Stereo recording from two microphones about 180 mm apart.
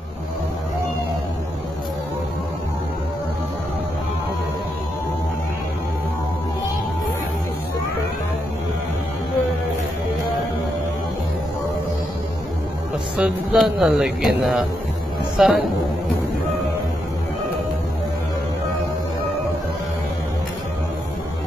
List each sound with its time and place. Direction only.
13.2 s a man's voice: 5° right (ahead or behind)